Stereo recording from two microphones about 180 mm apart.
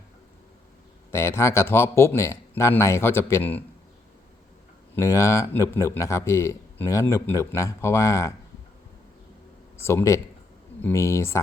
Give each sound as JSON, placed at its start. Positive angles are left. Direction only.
{"t": 1.1, "sound": "speech", "side_deg": 15}
{"t": 4.9, "sound": "speech", "side_deg": 15}
{"t": 9.7, "sound": "speech", "side_deg": 15}